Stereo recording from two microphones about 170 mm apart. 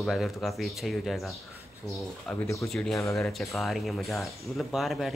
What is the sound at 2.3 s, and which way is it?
Speech, 20° left (ahead or behind).